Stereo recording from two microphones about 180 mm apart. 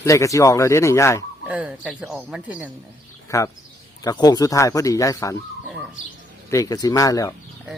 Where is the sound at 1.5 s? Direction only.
5° right (ahead or behind).